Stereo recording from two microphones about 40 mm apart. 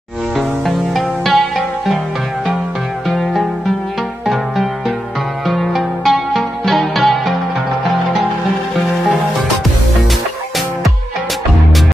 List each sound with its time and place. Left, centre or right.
0.9 s music: centre
3.1 s music: centre
5.5 s music: centre